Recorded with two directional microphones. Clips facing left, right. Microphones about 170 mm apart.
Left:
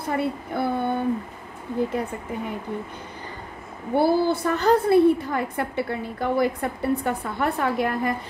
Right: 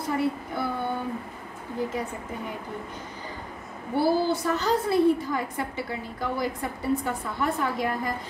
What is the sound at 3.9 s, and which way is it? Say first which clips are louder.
A woman's voice: left 3 dB; 55° left (ahead or behind).